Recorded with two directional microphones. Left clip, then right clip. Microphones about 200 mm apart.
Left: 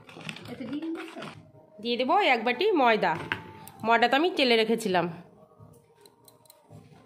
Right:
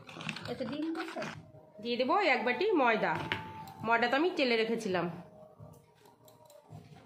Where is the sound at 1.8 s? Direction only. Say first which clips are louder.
Left 5 dB; 45° left (ahead or behind).